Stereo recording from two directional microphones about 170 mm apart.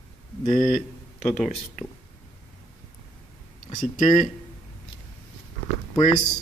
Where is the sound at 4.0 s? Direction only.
50° left (ahead or behind).